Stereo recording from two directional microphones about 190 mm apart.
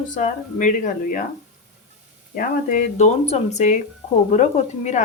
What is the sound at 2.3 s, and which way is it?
Speech, 45° left (ahead or behind).